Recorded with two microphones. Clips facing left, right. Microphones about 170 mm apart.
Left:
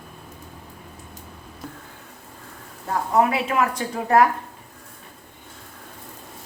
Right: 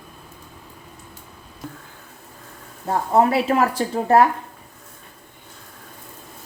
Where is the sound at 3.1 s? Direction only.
35° right (ahead or behind).